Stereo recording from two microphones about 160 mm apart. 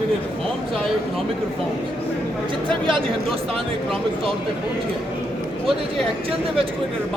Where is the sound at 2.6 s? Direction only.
30° right (ahead or behind).